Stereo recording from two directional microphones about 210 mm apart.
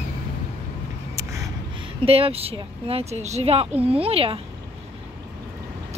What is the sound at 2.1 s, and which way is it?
Speech, 25° right (ahead or behind).